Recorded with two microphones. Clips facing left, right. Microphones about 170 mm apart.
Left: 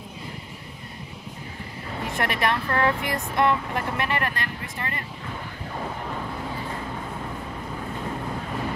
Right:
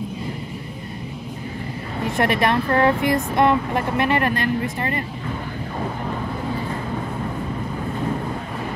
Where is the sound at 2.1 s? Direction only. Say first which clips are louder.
Right 6 dB; 30° right (ahead or behind).